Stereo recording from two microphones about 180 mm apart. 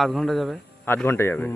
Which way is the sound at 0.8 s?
15° left (ahead or behind).